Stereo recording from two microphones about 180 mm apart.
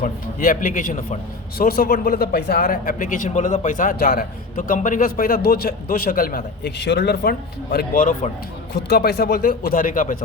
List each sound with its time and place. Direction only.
0.0 s a man's voice: 50° left (ahead or behind)
8.9 s a man's voice: 60° left (ahead or behind)